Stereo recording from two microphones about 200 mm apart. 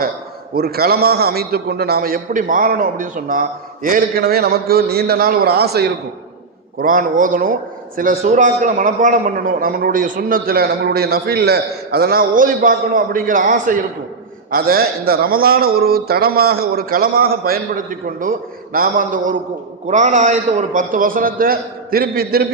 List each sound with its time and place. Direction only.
0.5 s a man's voice: 50° right (ahead or behind)